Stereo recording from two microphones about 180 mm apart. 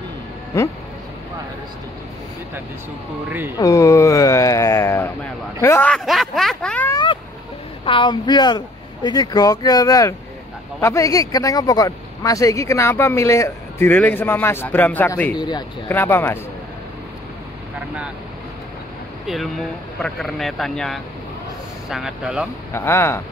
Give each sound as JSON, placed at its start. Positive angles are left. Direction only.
{"t": 0.5, "sound": "speech", "side_deg": 20}
{"t": 3.3, "sound": "speech", "side_deg": -10}
{"t": 3.5, "sound": "speech", "side_deg": 20}
{"t": 6.9, "sound": "cat", "side_deg": 25}
{"t": 7.8, "sound": "speech", "side_deg": 30}
{"t": 15.3, "sound": "speech", "side_deg": 25}
{"t": 15.9, "sound": "speech", "side_deg": 10}
{"t": 17.7, "sound": "boat", "side_deg": -5}
{"t": 19.2, "sound": "speech", "side_deg": 0}
{"t": 22.7, "sound": "speech", "side_deg": 15}